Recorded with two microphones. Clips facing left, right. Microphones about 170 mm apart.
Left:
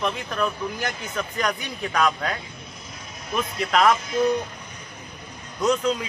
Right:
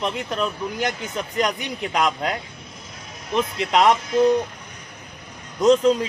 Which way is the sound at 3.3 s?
25° right (ahead or behind).